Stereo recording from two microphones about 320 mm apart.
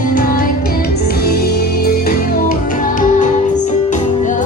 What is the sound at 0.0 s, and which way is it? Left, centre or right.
Music, left.